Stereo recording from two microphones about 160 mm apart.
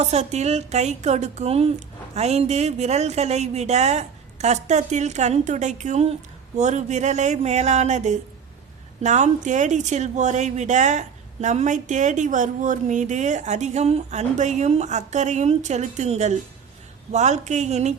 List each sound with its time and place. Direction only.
0.0 s speech: 45° right (ahead or behind)